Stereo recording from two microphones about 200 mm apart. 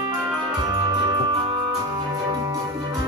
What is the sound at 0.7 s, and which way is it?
Music, 20° right (ahead or behind).